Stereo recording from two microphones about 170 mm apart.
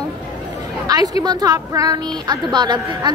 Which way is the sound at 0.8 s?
20° right (ahead or behind).